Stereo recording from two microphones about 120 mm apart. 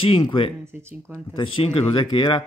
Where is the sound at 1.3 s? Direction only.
45° left (ahead or behind).